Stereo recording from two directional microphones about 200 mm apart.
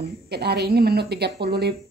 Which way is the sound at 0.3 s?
55° right (ahead or behind).